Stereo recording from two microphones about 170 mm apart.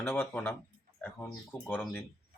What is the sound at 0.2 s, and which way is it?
Speech, 10° left (ahead or behind).